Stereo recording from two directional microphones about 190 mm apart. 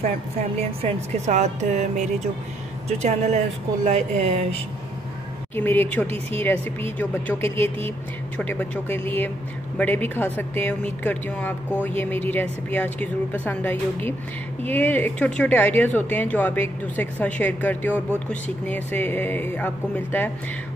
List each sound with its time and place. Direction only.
0.6 s speech: 35° right (ahead or behind)
5.6 s speech: 10° left (ahead or behind)